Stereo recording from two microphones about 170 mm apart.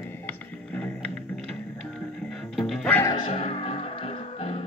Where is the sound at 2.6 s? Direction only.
Centre (ahead or behind).